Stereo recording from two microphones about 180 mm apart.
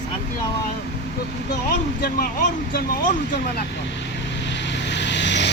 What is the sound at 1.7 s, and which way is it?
Speech, 60° left (ahead or behind).